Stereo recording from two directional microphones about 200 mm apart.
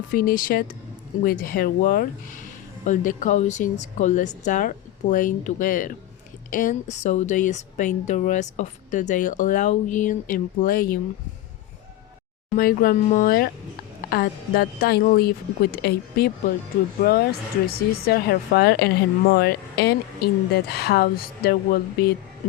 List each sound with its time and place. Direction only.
0.1 s a woman's voice: 45° left (ahead or behind)
12.5 s speech: 45° left (ahead or behind)